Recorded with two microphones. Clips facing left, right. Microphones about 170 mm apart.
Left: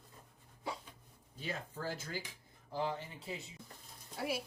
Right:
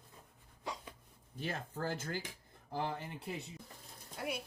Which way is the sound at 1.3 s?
50° right (ahead or behind).